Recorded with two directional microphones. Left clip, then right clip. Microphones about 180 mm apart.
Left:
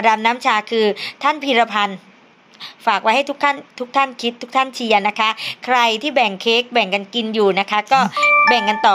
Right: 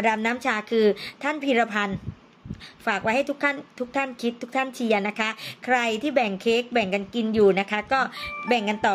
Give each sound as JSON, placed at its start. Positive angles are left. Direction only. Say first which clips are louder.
{"t": 0.0, "sound": "speech", "louder": "left 8 dB", "side_deg": -15}